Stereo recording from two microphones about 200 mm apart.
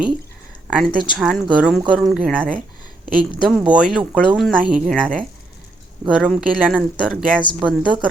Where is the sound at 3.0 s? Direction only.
45° right (ahead or behind).